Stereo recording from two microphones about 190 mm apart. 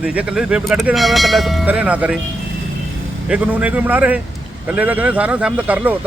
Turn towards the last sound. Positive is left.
turn(degrees=-10)  # may be behind; listen again after turning